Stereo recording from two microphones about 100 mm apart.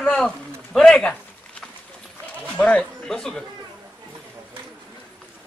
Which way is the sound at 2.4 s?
15° left (ahead or behind).